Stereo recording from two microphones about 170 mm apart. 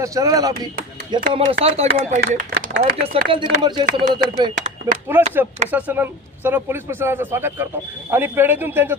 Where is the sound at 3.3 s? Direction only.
25° right (ahead or behind).